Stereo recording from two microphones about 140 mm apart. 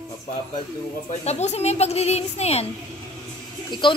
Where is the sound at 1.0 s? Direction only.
50° left (ahead or behind).